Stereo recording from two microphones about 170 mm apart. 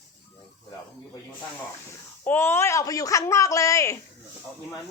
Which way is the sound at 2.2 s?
15° left (ahead or behind).